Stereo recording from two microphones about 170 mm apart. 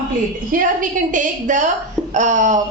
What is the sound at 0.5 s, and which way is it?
A woman's voice, 50° right (ahead or behind).